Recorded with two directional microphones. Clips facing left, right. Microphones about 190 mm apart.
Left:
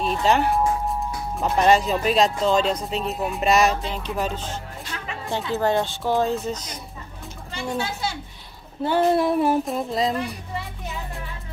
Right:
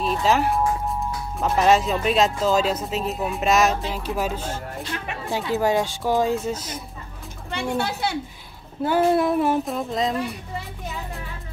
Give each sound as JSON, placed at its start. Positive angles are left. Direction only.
{"t": 0.0, "sound": "speech", "side_deg": 0}
{"t": 7.5, "sound": "a child's voice", "side_deg": -60}
{"t": 8.8, "sound": "speech", "side_deg": -5}